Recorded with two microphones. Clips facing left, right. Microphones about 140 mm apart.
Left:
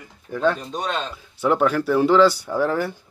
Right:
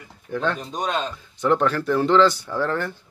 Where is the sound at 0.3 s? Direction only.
5° left (ahead or behind).